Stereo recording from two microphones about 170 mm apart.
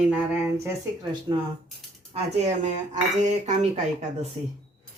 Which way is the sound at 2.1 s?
40° right (ahead or behind).